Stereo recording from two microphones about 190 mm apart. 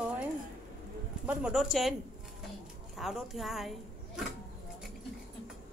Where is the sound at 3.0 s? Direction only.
Centre (ahead or behind).